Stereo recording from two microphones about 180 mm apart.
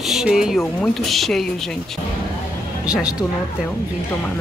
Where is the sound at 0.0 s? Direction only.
Centre (ahead or behind).